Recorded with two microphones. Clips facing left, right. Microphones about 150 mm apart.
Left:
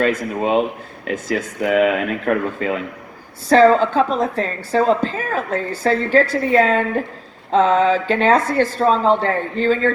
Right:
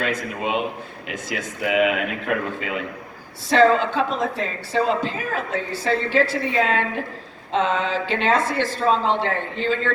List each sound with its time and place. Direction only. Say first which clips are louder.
1.0 s a woman's voice: left 8 dB; 40° left (ahead or behind)